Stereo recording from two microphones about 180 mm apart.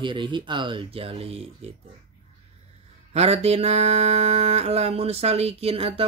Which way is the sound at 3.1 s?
35° right (ahead or behind).